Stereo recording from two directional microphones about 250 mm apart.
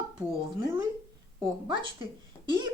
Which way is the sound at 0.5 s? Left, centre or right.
Centre.